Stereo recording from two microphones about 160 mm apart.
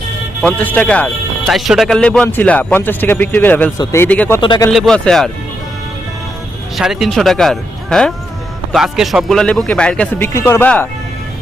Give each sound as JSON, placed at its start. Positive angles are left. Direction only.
{"t": 0.4, "sound": "a man's voice", "side_deg": 10}
{"t": 1.5, "sound": "a man's voice", "side_deg": 0}
{"t": 4.4, "sound": "speech", "side_deg": 30}
{"t": 4.7, "sound": "speech", "side_deg": 5}
{"t": 6.7, "sound": "speech", "side_deg": 0}